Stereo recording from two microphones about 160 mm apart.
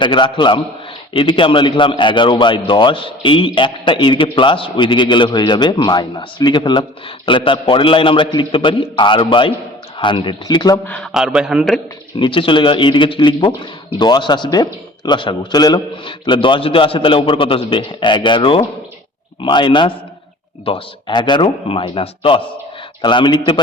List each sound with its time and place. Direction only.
0.0 s speech: 30° left (ahead or behind)
10.8 s a man's voice: 10° left (ahead or behind)
11.1 s a man's voice: 5° right (ahead or behind)
12.2 s speech: 30° left (ahead or behind)